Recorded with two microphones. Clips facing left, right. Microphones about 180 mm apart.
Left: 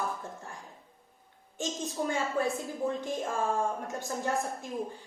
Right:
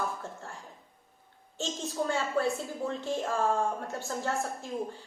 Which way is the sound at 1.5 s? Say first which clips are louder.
Right 1 dB; 15° left (ahead or behind).